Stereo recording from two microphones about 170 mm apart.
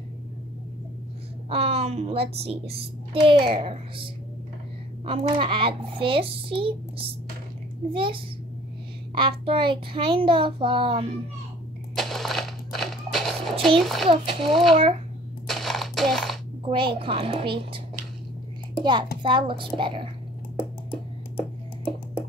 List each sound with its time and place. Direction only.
1.5 s child singing: 35° right (ahead or behind)
7.9 s child singing: 30° right (ahead or behind)
11.9 s a sound: centre (ahead or behind)
13.7 s a child's voice: centre (ahead or behind)
14.0 s child singing: 35° right (ahead or behind)
14.5 s a child's voice: centre (ahead or behind)
15.4 s a sound: centre (ahead or behind)
16.6 s child singing: 30° right (ahead or behind)
19.2 s a woman's voice: 30° right (ahead or behind)